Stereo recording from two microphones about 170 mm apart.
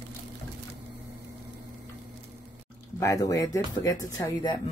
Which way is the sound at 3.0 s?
20° left (ahead or behind).